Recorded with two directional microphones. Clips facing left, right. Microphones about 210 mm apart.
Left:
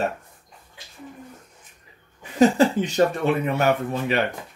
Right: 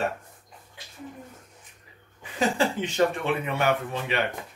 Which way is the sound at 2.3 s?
40° left (ahead or behind).